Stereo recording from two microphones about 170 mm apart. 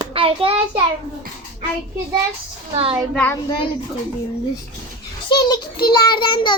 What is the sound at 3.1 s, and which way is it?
Speech, 5° left (ahead or behind).